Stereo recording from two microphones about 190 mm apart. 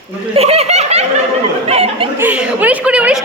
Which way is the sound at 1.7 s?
35° right (ahead or behind).